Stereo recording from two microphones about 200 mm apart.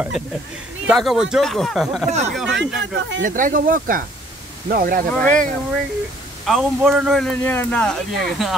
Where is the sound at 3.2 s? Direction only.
40° right (ahead or behind).